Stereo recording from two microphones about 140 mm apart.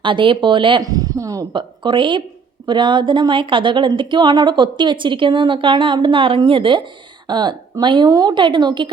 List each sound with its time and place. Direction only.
0.0 s speech: 35° right (ahead or behind)